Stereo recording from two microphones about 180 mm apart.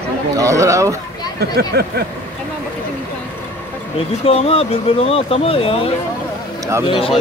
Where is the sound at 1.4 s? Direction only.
60° right (ahead or behind).